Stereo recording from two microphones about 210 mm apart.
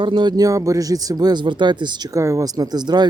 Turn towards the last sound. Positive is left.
turn(degrees=-20)  # may be behind; listen again after turning